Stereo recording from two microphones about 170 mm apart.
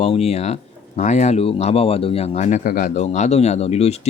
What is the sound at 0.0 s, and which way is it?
Speech, 35° left (ahead or behind).